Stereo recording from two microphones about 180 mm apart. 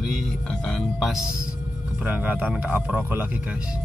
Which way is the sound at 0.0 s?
Centre (ahead or behind).